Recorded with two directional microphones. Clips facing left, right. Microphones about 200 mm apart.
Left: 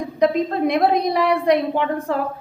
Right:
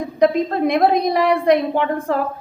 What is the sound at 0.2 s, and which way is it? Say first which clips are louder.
A woman's voice: right 2 dB; 50° right (ahead or behind).